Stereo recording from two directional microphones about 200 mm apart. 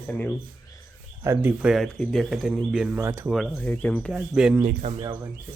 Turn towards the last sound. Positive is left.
turn(degrees=-40)  # may be behind; listen again after turning